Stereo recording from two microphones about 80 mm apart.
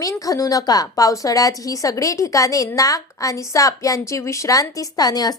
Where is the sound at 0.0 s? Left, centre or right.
Left.